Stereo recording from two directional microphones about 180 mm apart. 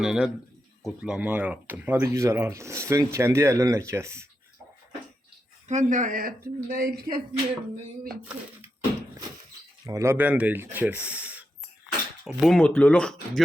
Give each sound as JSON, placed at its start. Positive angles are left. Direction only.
{"t": 0.0, "sound": "speech", "side_deg": 0}
{"t": 5.6, "sound": "speech", "side_deg": -40}
{"t": 9.8, "sound": "speech", "side_deg": -15}